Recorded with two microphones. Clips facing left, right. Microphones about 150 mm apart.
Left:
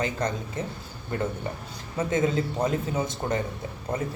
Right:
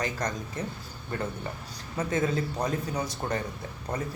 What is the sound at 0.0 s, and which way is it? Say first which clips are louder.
Speech: left 3 dB; 25° left (ahead or behind).